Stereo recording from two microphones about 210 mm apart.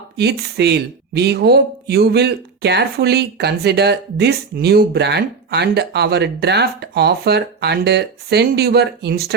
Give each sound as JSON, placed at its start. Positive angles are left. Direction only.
{"t": 0.2, "sound": "speech", "side_deg": -50}